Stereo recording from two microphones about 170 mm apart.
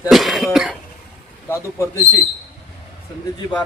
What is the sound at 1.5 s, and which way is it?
Speech, 15° left (ahead or behind).